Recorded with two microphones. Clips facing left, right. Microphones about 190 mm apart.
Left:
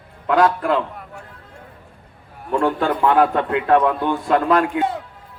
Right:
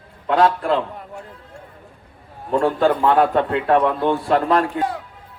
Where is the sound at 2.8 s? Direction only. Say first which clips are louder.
Right 1 dB; 30° right (ahead or behind).